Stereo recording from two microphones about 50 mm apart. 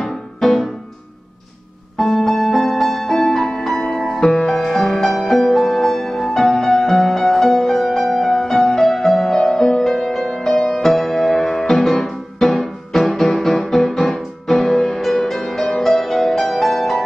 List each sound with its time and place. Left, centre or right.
0.0 s music: centre
2.0 s music: centre